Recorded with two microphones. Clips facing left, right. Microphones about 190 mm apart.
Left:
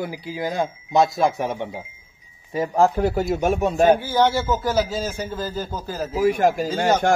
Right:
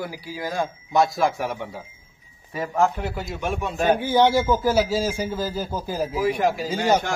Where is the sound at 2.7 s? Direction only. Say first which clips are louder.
Left 4 dB; 35° left (ahead or behind).